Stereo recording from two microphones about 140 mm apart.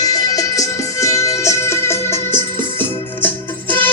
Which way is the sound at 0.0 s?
25° left (ahead or behind).